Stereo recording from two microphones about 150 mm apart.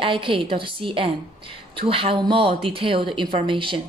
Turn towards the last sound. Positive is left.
turn(degrees=-35)  # may be behind; listen again after turning